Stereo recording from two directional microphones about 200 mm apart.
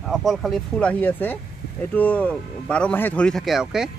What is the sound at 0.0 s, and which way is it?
Speech, centre (ahead or behind).